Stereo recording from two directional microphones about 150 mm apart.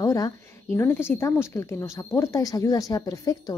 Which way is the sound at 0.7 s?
15° left (ahead or behind).